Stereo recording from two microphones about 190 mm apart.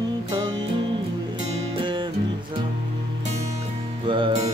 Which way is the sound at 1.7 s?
25° right (ahead or behind).